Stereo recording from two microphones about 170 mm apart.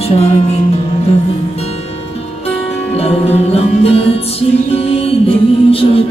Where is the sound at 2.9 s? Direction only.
35° left (ahead or behind).